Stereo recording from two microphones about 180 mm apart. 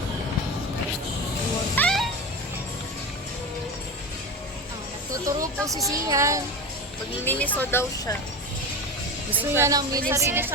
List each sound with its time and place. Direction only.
1.7 s music: 5° left (ahead or behind)
5.1 s a woman's voice: 20° right (ahead or behind)
7.3 s speech: 10° left (ahead or behind)
9.4 s a woman's voice: 15° right (ahead or behind)